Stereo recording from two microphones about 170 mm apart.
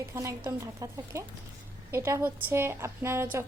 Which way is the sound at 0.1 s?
15° right (ahead or behind).